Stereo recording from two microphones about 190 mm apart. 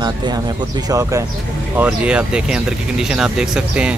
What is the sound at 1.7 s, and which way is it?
Speech, 5° right (ahead or behind).